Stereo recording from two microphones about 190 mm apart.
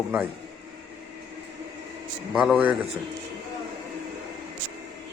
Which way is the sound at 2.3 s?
5° right (ahead or behind).